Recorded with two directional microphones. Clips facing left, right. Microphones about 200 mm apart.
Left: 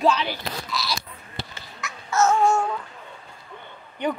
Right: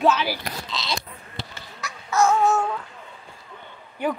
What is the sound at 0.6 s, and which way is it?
Bleat, 20° right (ahead or behind).